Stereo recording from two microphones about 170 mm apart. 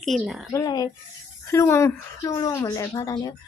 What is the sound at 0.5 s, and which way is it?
A woman's voice, 20° left (ahead or behind).